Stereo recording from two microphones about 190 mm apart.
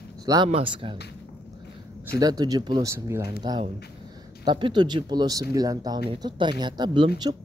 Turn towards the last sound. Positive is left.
turn(degrees=-25)  # may be behind; listen again after turning